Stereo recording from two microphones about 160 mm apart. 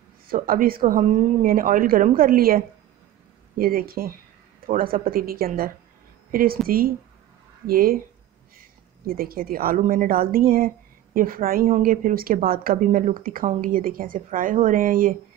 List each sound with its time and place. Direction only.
0.3 s a woman's voice: 65° right (ahead or behind)